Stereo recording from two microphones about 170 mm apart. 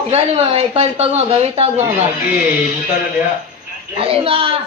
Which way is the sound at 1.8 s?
10° right (ahead or behind).